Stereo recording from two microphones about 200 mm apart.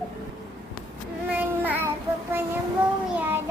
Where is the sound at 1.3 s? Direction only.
10° right (ahead or behind).